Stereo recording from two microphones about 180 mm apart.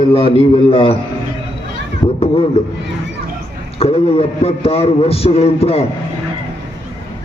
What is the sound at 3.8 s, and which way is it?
A man's voice, 35° left (ahead or behind).